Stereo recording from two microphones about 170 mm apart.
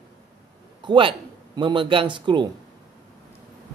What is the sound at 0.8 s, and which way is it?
A man's voice, 30° right (ahead or behind).